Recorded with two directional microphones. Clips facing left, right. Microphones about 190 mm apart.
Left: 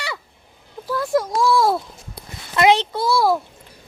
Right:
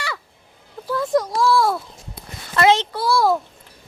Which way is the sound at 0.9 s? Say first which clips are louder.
Right 1 dB; 5° left (ahead or behind).